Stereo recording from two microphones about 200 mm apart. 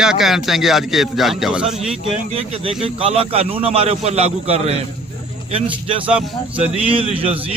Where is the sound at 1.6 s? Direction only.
30° right (ahead or behind).